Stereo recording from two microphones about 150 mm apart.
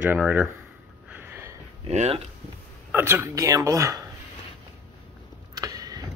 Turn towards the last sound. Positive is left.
turn(degrees=-25)  # may be behind; listen again after turning